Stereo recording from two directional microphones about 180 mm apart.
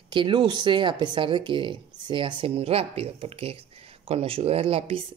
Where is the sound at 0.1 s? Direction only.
25° right (ahead or behind).